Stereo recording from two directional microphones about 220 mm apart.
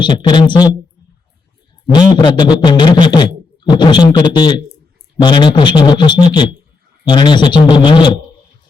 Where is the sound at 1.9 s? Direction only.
20° left (ahead or behind).